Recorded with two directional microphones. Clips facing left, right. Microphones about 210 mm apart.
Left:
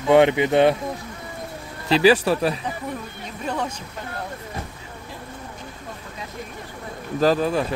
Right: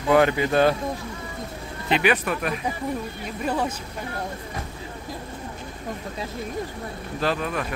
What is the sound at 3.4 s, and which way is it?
Speech, 5° right (ahead or behind).